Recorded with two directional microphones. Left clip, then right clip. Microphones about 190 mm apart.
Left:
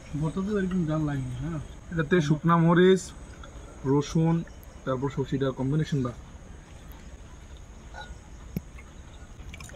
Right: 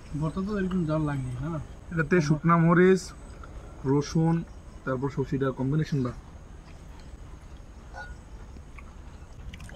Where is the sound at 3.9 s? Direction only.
15° right (ahead or behind).